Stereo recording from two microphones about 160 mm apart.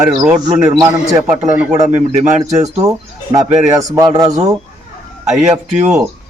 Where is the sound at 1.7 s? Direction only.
45° right (ahead or behind).